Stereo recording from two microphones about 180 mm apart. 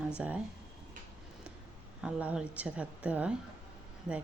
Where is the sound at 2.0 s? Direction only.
5° right (ahead or behind).